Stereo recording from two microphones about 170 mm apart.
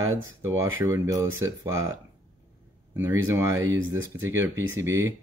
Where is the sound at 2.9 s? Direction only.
15° right (ahead or behind).